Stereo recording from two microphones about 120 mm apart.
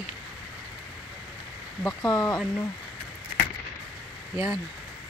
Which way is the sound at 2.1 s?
35° left (ahead or behind).